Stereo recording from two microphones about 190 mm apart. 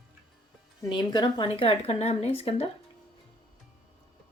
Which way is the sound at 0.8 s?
20° left (ahead or behind).